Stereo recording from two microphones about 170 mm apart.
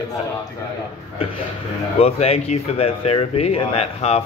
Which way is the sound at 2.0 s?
35° left (ahead or behind).